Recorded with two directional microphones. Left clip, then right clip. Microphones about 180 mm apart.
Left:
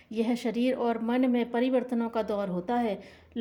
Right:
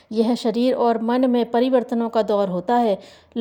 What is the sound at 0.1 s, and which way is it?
Speech, 40° right (ahead or behind).